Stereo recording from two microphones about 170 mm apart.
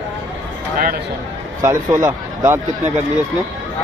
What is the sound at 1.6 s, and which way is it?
Speech, 15° right (ahead or behind).